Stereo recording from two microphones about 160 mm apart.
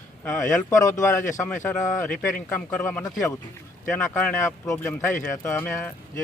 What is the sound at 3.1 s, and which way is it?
Speech, 20° left (ahead or behind).